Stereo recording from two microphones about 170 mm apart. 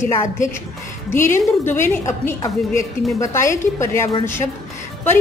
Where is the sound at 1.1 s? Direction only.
15° left (ahead or behind).